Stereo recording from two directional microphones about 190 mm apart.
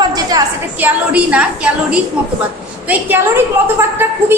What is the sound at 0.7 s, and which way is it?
A woman's voice, 10° right (ahead or behind).